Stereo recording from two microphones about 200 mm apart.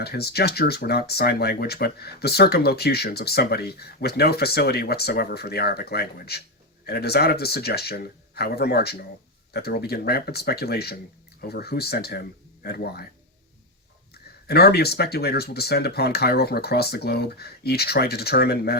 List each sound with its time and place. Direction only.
0.0 s speech: 50° left (ahead or behind)
14.1 s speech: 50° left (ahead or behind)